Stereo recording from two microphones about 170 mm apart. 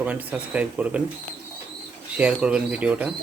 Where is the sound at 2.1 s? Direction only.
5° right (ahead or behind).